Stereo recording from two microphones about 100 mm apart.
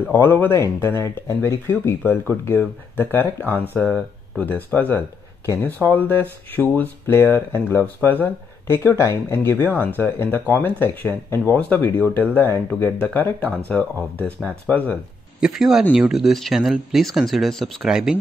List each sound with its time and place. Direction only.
0.0 s speech: 20° left (ahead or behind)
15.4 s speech: 5° right (ahead or behind)
17.9 s speech: 10° right (ahead or behind)